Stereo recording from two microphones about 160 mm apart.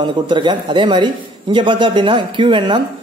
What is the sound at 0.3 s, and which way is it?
Speech, 30° right (ahead or behind).